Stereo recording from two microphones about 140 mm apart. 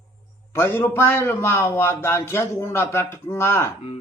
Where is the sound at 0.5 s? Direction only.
15° left (ahead or behind).